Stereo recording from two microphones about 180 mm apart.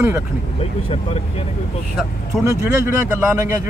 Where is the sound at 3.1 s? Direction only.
15° right (ahead or behind).